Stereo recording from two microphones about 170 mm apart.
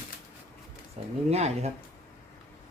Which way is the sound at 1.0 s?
40° right (ahead or behind).